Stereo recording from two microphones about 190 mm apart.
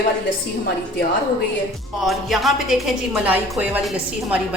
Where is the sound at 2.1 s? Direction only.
Centre (ahead or behind).